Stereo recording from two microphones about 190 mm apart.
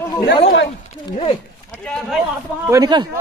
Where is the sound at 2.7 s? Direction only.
20° right (ahead or behind).